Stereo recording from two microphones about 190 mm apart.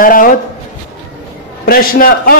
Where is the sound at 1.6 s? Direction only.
50° left (ahead or behind).